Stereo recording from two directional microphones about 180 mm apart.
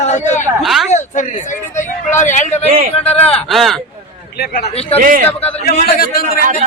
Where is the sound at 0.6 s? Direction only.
Centre (ahead or behind).